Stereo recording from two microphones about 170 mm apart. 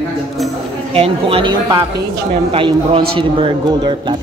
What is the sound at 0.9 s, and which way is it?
A man's voice, 35° right (ahead or behind).